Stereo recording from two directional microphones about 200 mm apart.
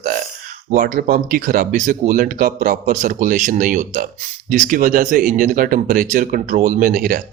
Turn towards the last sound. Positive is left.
turn(degrees=-45)  # may be behind; listen again after turning